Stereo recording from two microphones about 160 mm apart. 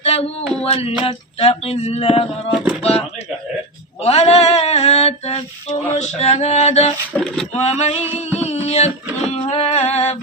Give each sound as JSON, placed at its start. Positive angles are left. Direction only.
{"t": 0.0, "sound": "a sound", "side_deg": 40}
{"t": 0.6, "sound": "female singing", "side_deg": 40}
{"t": 4.0, "sound": "female singing", "side_deg": 40}
{"t": 7.1, "sound": "speech", "side_deg": 5}
{"t": 7.5, "sound": "a sound", "side_deg": 45}
{"t": 9.3, "sound": "female singing", "side_deg": 40}